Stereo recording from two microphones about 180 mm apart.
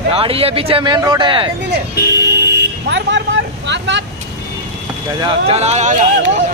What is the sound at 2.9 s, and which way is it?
Vehicle, 90° right.